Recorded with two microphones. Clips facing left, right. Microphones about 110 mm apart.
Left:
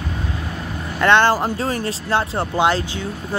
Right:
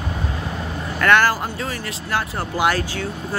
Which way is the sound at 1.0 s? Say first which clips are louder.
Left 2 dB; 25° left (ahead or behind).